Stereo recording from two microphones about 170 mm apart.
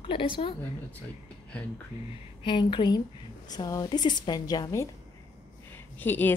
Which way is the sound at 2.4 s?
30° left (ahead or behind).